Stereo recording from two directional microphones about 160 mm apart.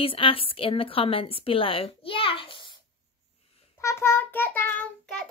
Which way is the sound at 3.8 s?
15° left (ahead or behind).